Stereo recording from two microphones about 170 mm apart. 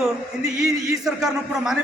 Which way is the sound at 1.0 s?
20° right (ahead or behind).